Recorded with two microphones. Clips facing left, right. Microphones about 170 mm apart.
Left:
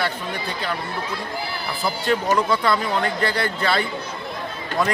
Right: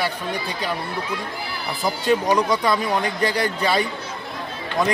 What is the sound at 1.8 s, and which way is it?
Speech, 15° right (ahead or behind).